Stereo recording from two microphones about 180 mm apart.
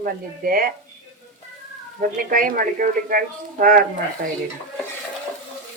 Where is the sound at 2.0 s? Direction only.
50° right (ahead or behind).